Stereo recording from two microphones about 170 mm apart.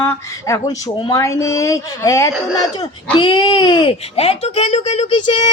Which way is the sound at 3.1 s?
30° left (ahead or behind).